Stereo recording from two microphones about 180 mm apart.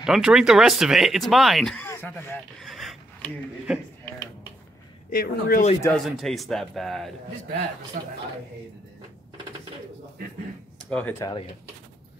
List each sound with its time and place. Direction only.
0.0 s speech: 5° right (ahead or behind)
1.9 s speech: 10° left (ahead or behind)
5.1 s speech: 55° left (ahead or behind)
5.8 s speech: 5° left (ahead or behind)
8.0 s a man's voice: 45° right (ahead or behind)
10.9 s speech: 5° left (ahead or behind)
11.1 s speech: 20° left (ahead or behind)